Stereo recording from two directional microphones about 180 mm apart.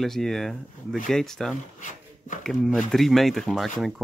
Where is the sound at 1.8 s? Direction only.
45° left (ahead or behind).